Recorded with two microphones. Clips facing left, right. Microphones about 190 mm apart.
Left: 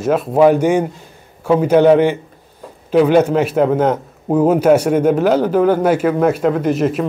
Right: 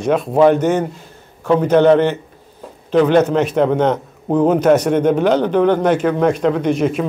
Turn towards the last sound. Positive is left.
turn(degrees=0)  # may be behind; listen again after turning